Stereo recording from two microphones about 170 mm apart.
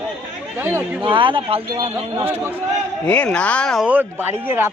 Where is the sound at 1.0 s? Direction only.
30° right (ahead or behind).